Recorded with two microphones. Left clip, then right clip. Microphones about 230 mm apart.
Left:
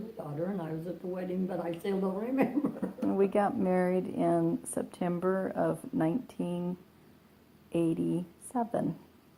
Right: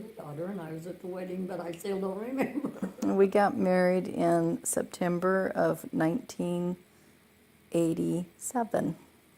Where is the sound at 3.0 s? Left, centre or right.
Right.